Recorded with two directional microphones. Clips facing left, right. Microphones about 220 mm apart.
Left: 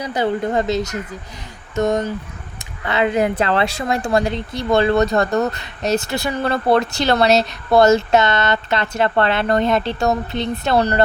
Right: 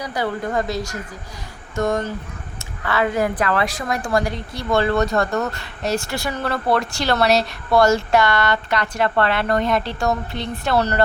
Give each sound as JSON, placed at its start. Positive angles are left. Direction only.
{"t": 0.0, "sound": "speech", "side_deg": 20}